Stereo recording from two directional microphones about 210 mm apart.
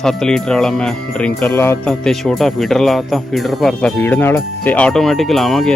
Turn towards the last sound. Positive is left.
turn(degrees=0)  # may be behind; listen again after turning